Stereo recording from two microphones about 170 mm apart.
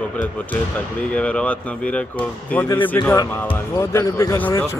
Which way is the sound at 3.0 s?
10° left (ahead or behind).